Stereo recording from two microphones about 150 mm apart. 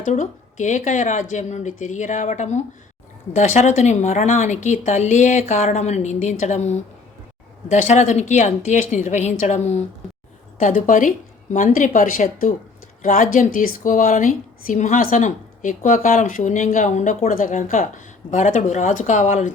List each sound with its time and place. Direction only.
0.0 s a woman's voice: 55° left (ahead or behind)
10.6 s a woman's voice: 55° left (ahead or behind)